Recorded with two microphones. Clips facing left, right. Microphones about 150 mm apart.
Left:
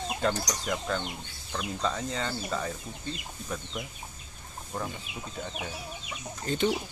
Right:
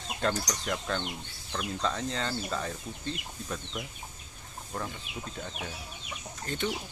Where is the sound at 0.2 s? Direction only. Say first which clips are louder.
Even; 5° left (ahead or behind).